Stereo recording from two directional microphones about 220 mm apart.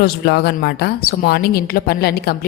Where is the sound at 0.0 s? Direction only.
50° left (ahead or behind).